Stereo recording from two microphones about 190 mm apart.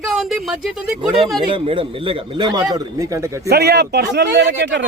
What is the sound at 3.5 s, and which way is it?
A man's voice, 60° right (ahead or behind).